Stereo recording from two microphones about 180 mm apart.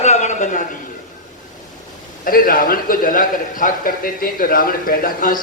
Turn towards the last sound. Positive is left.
turn(degrees=50)  # may be behind; listen again after turning